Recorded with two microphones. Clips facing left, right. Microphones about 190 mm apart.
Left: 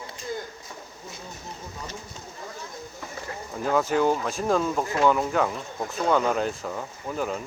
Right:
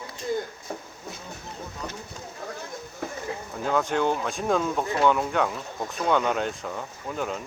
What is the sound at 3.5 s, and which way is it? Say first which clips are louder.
Speech: left 2 dB; 5° left (ahead or behind).